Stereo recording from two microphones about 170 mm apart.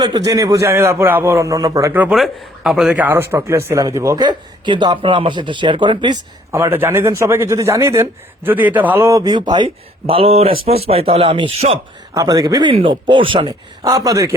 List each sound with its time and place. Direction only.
0.0 s a man's voice: 20° right (ahead or behind)
12.1 s a man's voice: 20° right (ahead or behind)